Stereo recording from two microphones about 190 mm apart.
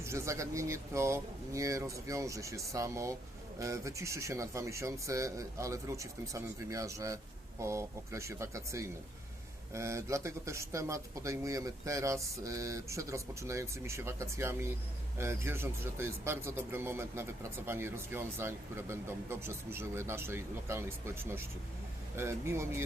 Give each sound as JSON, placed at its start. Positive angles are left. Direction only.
{"t": 0.0, "sound": "speech", "side_deg": -15}